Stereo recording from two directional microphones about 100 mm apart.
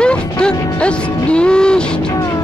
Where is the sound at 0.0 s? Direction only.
10° left (ahead or behind).